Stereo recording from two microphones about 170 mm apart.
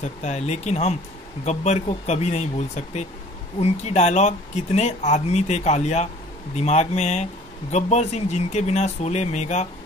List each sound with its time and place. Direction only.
0.0 s speech: 40° left (ahead or behind)